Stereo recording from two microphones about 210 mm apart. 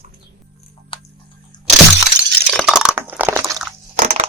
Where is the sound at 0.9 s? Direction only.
25° left (ahead or behind).